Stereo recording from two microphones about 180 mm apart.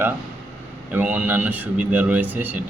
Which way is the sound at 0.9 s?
10° right (ahead or behind).